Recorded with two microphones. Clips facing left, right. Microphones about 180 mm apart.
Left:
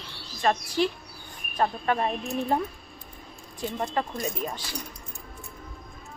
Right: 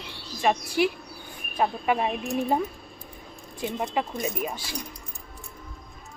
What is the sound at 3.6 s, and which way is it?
Speech, 10° right (ahead or behind).